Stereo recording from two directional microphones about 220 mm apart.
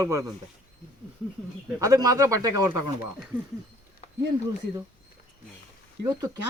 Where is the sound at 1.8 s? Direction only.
15° right (ahead or behind).